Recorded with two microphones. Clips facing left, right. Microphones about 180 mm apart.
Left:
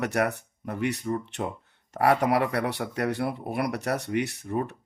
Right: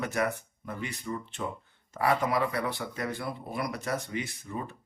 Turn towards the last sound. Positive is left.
turn(degrees=55)  # may be behind; listen again after turning